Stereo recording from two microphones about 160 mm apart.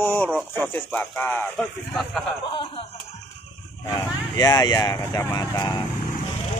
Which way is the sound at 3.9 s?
25° left (ahead or behind).